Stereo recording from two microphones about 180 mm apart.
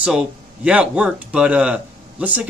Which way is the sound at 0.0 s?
5° right (ahead or behind).